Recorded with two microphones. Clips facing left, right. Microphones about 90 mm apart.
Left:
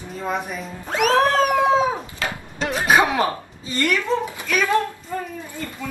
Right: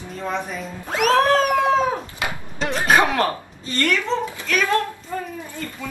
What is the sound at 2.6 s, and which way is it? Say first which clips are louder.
Speech: even; centre (ahead or behind).